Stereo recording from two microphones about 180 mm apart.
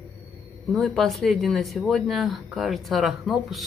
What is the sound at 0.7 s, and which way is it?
Speech, centre (ahead or behind).